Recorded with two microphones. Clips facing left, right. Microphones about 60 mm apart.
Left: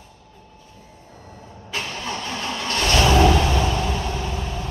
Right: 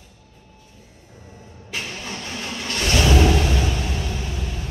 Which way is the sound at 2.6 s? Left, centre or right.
Left.